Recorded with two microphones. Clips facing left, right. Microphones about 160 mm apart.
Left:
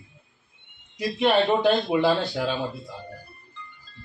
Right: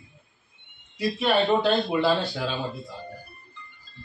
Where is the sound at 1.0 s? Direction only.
20° left (ahead or behind).